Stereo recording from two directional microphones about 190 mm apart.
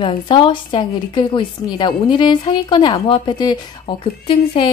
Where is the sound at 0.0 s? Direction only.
25° left (ahead or behind).